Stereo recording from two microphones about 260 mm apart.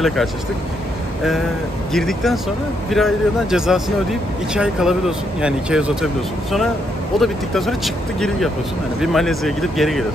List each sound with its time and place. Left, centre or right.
0.0 s speech: centre
1.9 s speech: centre
7.2 s speech: centre